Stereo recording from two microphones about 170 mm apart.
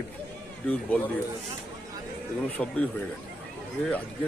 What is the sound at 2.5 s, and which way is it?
Speech, 10° left (ahead or behind).